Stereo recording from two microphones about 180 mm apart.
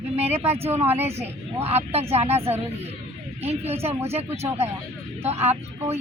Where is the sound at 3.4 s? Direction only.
35° right (ahead or behind).